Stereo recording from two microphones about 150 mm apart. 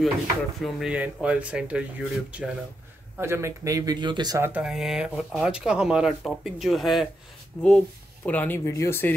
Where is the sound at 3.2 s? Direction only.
15° right (ahead or behind).